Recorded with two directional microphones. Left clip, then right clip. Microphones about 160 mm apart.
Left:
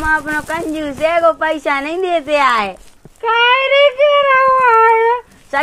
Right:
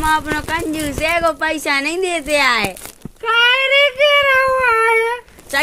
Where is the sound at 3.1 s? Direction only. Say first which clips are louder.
Left 2 dB; 90° right.